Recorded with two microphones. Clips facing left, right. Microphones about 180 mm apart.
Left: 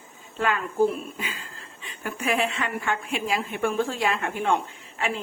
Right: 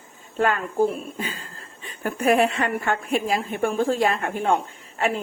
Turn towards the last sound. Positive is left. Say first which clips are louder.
# right 5 dB
turn(degrees=-45)  # may be behind; listen again after turning